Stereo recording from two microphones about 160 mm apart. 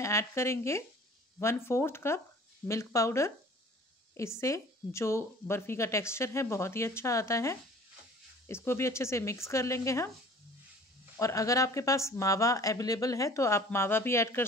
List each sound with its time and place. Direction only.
0.0 s speech: 20° left (ahead or behind)
11.1 s speech: 20° left (ahead or behind)